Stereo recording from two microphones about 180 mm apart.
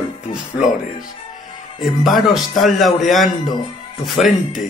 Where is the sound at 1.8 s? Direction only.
Centre (ahead or behind).